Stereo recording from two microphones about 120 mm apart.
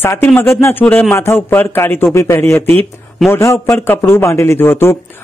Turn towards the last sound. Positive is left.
turn(degrees=20)  # may be behind; listen again after turning